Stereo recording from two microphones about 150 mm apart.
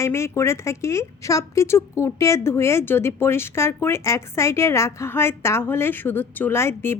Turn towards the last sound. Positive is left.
turn(degrees=15)  # may be behind; listen again after turning